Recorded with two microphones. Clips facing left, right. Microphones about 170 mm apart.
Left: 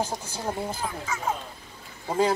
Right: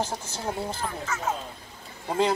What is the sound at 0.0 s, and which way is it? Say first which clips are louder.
Speech: left 1 dB; 10° left (ahead or behind).